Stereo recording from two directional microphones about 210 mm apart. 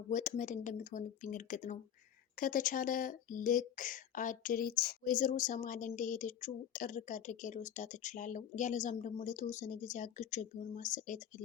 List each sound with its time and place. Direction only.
0.1 s speech: 35° left (ahead or behind)